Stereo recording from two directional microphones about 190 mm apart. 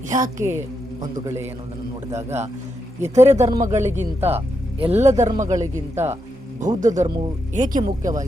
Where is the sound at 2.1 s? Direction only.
35° right (ahead or behind).